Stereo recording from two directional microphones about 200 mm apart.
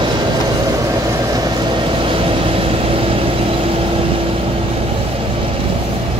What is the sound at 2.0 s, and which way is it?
Vehicle, 25° right (ahead or behind).